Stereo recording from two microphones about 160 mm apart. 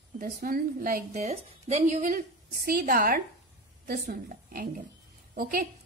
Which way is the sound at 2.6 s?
65° right (ahead or behind).